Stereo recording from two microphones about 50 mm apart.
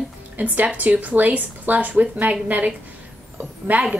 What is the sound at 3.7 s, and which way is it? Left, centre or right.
Speech, right.